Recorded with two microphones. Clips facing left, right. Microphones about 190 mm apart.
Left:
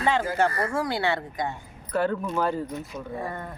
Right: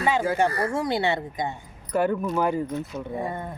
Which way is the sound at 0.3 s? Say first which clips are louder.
Right 1 dB; 15° right (ahead or behind).